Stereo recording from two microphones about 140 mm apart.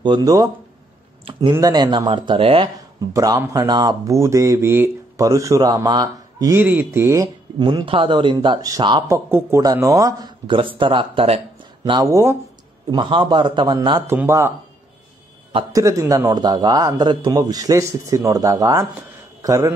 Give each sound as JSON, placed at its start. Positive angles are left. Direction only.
{"t": 0.0, "sound": "a man's voice", "side_deg": -30}
{"t": 1.5, "sound": "speech", "side_deg": -25}
{"t": 3.1, "sound": "a man's voice", "side_deg": -25}
{"t": 6.5, "sound": "speech", "side_deg": -15}
{"t": 7.5, "sound": "speech", "side_deg": -35}
{"t": 9.0, "sound": "a man's voice", "side_deg": -20}
{"t": 12.9, "sound": "speech", "side_deg": -35}
{"t": 14.0, "sound": "speech", "side_deg": -15}
{"t": 15.7, "sound": "a man's voice", "side_deg": -20}